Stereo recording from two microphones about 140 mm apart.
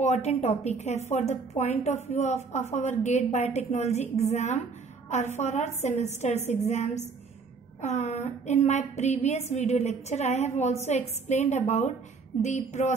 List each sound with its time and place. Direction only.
0.0 s a woman's voice: 50° left (ahead or behind)